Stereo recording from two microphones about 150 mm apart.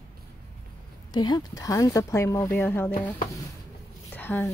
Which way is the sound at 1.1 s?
30° left (ahead or behind).